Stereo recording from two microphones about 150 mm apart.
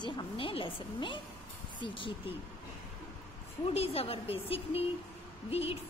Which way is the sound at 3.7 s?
40° left (ahead or behind).